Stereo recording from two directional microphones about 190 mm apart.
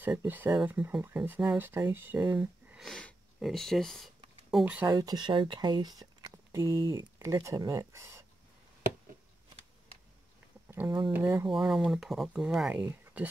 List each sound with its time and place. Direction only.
0.0 s speech: 10° right (ahead or behind)
10.7 s a sound: 10° right (ahead or behind)
11.1 s speech: 10° right (ahead or behind)